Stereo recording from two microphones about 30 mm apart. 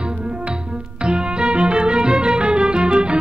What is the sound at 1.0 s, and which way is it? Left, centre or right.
Music, right.